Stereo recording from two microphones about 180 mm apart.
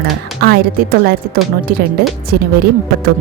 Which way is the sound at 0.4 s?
55° right (ahead or behind).